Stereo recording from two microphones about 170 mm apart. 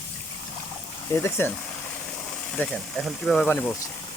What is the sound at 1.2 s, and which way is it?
Speech, 15° left (ahead or behind).